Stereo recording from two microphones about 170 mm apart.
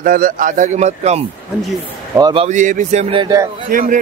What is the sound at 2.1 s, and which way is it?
Speech, 25° right (ahead or behind).